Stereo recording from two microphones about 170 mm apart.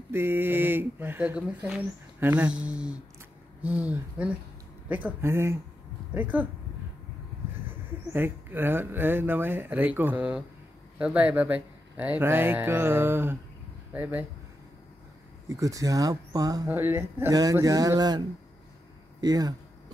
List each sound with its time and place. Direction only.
0.1 s speech: 15° right (ahead or behind)
7.6 s speech: 10° right (ahead or behind)
15.4 s speech: 20° right (ahead or behind)
19.2 s speech: 20° right (ahead or behind)